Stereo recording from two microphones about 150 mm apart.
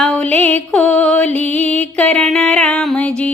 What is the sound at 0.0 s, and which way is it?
Mantra, 5° left (ahead or behind).